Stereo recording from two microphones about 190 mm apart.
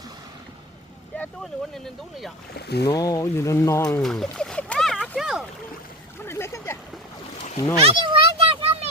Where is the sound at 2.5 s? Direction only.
60° left (ahead or behind).